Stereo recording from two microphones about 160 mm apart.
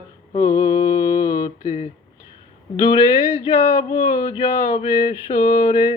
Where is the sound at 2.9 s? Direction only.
30° left (ahead or behind).